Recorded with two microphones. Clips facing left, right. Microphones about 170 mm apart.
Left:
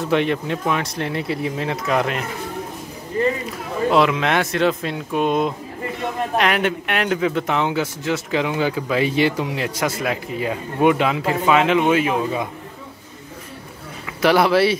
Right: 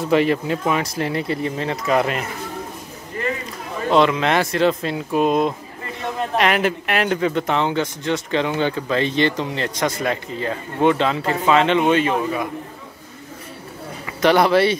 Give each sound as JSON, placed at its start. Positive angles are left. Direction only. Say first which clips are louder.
{"t": 0.0, "sound": "speech", "louder": "right 2 dB", "side_deg": 0}
{"t": 3.4, "sound": "a man's voice", "louder": "left 2 dB", "side_deg": 5}
{"t": 14.0, "sound": "speech", "louder": "right 1 dB", "side_deg": 0}